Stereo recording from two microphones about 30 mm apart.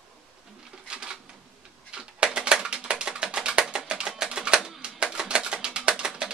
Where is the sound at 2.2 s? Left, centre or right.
Right.